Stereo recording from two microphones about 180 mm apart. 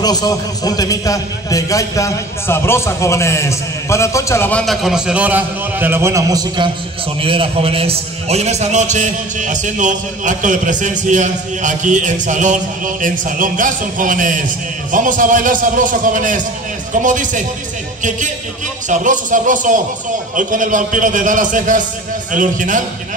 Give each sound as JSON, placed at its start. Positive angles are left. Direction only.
{"t": 0.0, "sound": "a man's voice", "side_deg": 20}
{"t": 18.9, "sound": "a man's voice", "side_deg": -45}